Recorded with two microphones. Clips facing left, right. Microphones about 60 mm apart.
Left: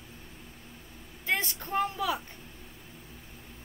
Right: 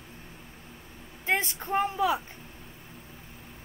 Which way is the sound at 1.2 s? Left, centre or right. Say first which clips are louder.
Right 3 dB; right.